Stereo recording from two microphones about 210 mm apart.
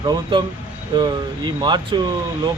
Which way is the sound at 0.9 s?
20° right (ahead or behind).